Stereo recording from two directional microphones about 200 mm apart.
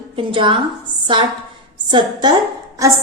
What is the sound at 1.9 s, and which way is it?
Speech, 20° right (ahead or behind).